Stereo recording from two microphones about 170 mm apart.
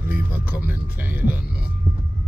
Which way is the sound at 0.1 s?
10° right (ahead or behind).